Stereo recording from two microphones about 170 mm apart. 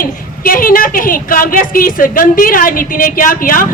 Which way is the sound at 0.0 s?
55° left (ahead or behind).